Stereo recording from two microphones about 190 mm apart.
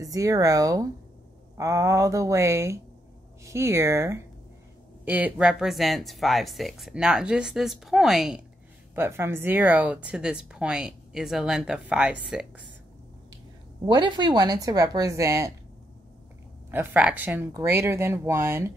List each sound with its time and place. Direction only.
0.0 s speech: 20° right (ahead or behind)
13.8 s speech: 25° right (ahead or behind)
16.7 s speech: 10° right (ahead or behind)